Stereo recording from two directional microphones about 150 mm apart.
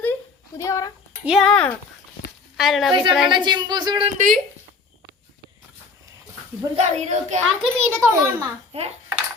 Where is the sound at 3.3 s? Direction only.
30° right (ahead or behind).